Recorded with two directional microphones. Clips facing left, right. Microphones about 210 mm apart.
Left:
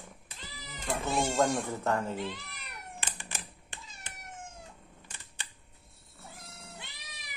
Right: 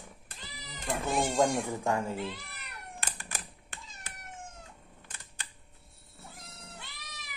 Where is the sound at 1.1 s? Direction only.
15° right (ahead or behind).